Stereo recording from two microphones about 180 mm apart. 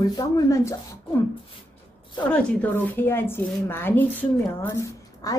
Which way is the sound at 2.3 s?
10° left (ahead or behind).